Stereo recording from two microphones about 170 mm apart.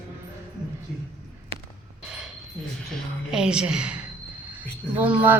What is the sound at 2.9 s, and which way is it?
A woman's voice, 5° right (ahead or behind).